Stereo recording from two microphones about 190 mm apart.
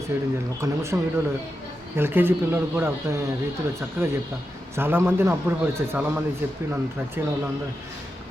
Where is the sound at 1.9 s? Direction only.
10° right (ahead or behind).